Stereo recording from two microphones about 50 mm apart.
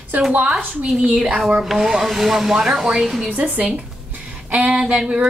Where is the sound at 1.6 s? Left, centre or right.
Centre.